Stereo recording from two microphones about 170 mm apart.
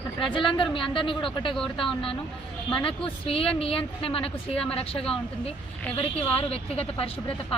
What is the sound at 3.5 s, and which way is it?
Speech, 35° left (ahead or behind).